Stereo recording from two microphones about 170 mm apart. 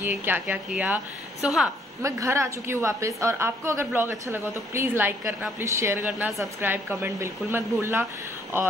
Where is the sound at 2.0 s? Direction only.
15° right (ahead or behind).